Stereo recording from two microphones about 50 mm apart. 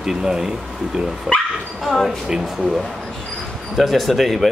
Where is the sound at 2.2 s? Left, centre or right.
Centre.